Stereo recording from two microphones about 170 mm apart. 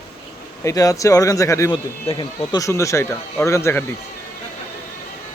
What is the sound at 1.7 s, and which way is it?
Speech, 30° left (ahead or behind).